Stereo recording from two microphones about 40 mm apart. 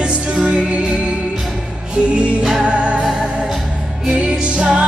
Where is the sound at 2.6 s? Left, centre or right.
Right.